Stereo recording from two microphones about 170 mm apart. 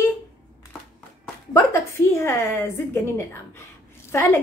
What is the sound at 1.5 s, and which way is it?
A woman's voice, 15° left (ahead or behind).